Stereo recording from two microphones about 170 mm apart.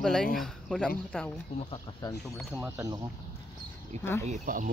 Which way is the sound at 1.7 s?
20° left (ahead or behind).